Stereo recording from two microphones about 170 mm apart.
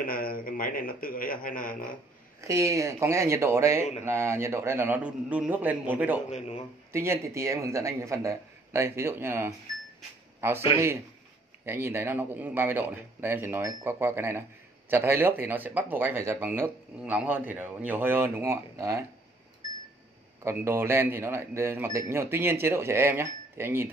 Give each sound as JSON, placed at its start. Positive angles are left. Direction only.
{"t": 0.0, "sound": "speech", "side_deg": 60}
{"t": 2.4, "sound": "speech", "side_deg": -20}
{"t": 6.3, "sound": "a man's voice", "side_deg": 40}
{"t": 6.9, "sound": "speech", "side_deg": -15}
{"t": 20.4, "sound": "speech", "side_deg": -15}